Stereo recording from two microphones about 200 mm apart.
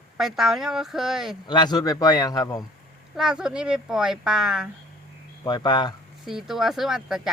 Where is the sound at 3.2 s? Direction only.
5° right (ahead or behind).